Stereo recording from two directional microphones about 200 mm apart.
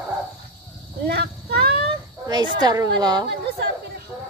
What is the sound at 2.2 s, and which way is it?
A woman's voice, 20° right (ahead or behind).